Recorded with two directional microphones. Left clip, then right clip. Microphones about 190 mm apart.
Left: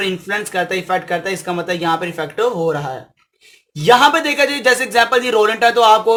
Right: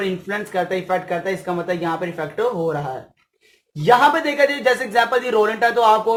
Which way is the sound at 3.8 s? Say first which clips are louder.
Left 3 dB; 25° left (ahead or behind).